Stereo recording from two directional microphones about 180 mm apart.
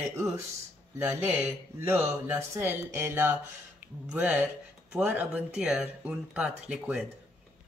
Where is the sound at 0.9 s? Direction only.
15° right (ahead or behind).